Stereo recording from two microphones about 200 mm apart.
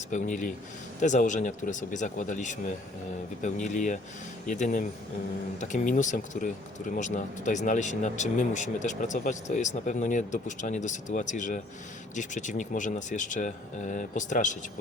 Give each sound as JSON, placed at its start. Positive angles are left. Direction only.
{"t": 0.1, "sound": "speech", "side_deg": 40}